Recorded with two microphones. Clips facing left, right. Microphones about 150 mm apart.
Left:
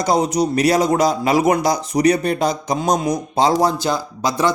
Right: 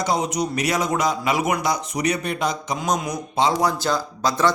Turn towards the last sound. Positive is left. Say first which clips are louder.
# left 2 dB
turn(degrees=15)  # may be behind; listen again after turning